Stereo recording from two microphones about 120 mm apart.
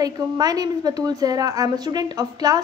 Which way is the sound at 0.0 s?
30° right (ahead or behind).